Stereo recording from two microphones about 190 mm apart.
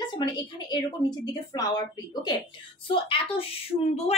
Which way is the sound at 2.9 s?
30° left (ahead or behind).